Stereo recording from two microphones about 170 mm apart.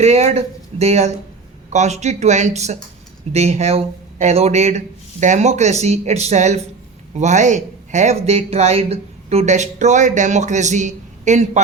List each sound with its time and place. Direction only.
0.0 s speech: 40° right (ahead or behind)